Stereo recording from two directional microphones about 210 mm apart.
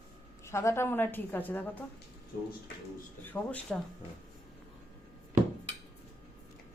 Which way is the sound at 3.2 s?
5° left (ahead or behind).